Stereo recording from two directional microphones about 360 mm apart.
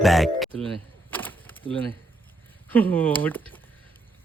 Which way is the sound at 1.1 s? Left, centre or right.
Centre.